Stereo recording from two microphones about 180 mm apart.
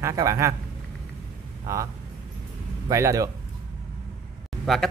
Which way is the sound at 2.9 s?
15° right (ahead or behind).